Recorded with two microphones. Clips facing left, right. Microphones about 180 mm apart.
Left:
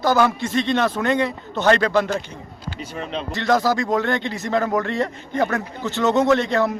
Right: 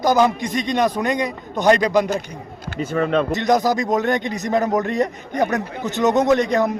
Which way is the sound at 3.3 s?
20° right (ahead or behind).